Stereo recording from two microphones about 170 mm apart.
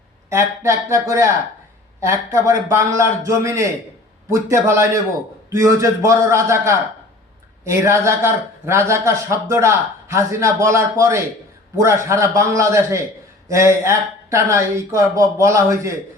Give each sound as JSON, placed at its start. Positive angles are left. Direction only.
{"t": 0.3, "sound": "a man's voice", "side_deg": -15}